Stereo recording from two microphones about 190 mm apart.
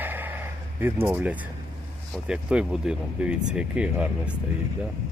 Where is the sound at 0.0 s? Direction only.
10° right (ahead or behind).